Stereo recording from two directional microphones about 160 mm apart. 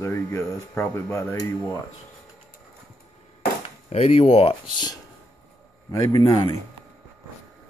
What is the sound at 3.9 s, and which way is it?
Speech, 40° left (ahead or behind).